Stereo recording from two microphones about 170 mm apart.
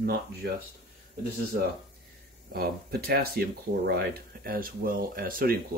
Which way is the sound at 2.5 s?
65° right (ahead or behind).